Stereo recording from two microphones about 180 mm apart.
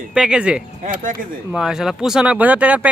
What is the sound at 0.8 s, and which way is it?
Speech, 45° right (ahead or behind).